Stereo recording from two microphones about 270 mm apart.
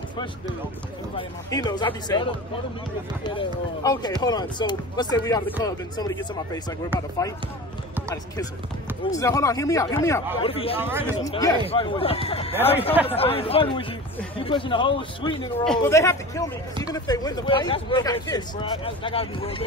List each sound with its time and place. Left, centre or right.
1.1 s speech: centre
3.3 s speech: centre
9.0 s speech: centre
10.8 s speech: centre
11.2 s speech: centre
15.6 s speech: centre